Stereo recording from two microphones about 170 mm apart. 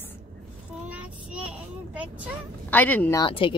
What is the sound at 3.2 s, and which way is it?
Speech, 30° left (ahead or behind).